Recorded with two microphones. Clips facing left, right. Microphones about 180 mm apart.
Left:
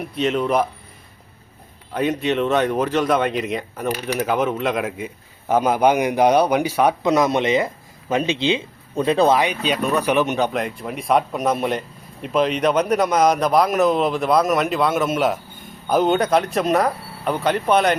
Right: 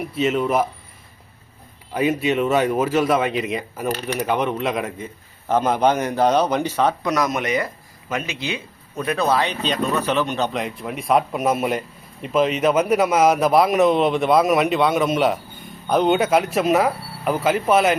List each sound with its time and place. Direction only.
0.0 s a man's voice: 5° right (ahead or behind)
1.9 s a man's voice: 5° right (ahead or behind); by 6.9 s 10° left (ahead or behind)
7.0 s speech: 25° left (ahead or behind)
9.4 s a man's voice: 10° left (ahead or behind)
10.5 s a man's voice: centre (ahead or behind)